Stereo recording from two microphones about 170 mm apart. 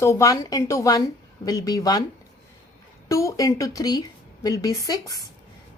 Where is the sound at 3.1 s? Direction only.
20° left (ahead or behind).